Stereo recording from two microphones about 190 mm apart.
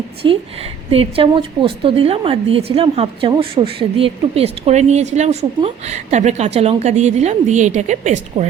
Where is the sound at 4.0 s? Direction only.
30° right (ahead or behind).